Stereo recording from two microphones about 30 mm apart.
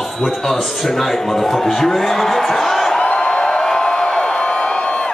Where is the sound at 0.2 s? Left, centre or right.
Centre.